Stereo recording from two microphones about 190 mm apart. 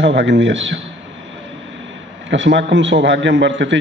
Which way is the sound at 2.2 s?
75° right (ahead or behind).